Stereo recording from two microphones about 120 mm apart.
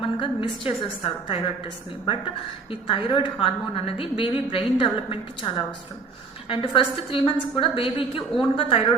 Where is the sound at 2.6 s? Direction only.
45° left (ahead or behind).